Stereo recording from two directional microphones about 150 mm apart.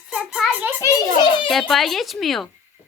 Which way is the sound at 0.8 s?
20° left (ahead or behind).